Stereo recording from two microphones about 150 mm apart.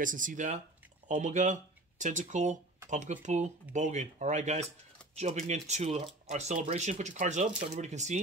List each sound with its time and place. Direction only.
0.0 s speech: 60° right (ahead or behind)